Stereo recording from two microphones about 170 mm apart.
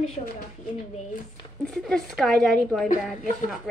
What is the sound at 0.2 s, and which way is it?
Speech, 40° left (ahead or behind).